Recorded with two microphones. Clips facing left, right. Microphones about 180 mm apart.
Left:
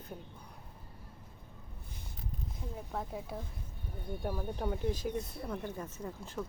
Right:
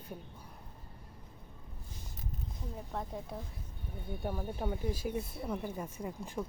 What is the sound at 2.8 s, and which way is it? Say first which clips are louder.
Speech: left 1 dB; centre (ahead or behind).